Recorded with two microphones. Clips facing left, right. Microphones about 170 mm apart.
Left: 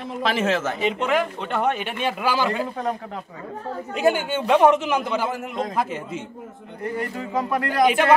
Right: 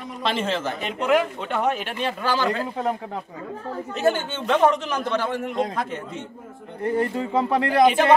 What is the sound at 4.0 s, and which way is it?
A man's voice, 10° left (ahead or behind).